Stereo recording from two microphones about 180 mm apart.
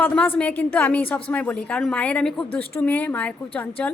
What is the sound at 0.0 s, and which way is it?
A woman's voice, 10° left (ahead or behind).